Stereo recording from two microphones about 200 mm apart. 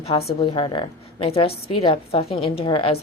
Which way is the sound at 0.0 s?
30° left (ahead or behind).